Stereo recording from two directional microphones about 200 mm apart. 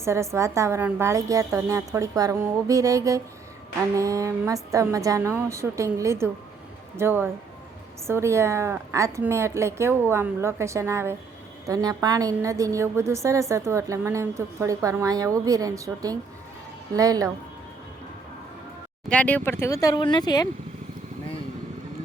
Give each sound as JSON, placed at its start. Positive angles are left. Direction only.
{"t": 0.0, "sound": "a woman's voice", "side_deg": -15}
{"t": 19.0, "sound": "speech", "side_deg": 5}